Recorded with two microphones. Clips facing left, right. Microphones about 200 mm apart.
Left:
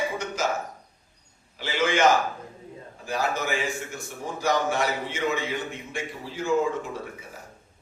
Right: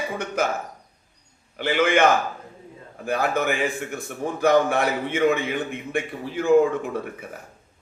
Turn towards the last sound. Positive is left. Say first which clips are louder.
# right 7 dB
turn(degrees=-55)  # may be behind; listen again after turning